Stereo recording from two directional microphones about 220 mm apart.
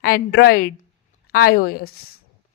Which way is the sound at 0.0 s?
45° left (ahead or behind).